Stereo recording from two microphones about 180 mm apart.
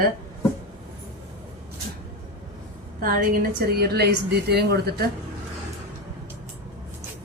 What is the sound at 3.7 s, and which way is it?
A woman's voice, 65° right (ahead or behind).